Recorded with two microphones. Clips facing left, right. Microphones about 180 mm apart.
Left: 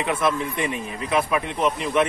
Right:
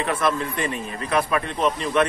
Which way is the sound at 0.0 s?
15° left (ahead or behind).